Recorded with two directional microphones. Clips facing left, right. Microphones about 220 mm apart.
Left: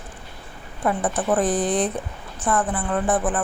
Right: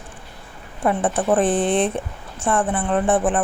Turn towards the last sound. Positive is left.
turn(degrees=-25)  # may be behind; listen again after turning